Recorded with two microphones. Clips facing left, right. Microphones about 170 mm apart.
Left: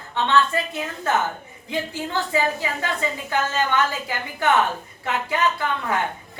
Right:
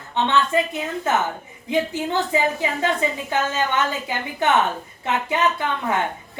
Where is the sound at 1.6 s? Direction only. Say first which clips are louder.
Right 5 dB; 20° right (ahead or behind).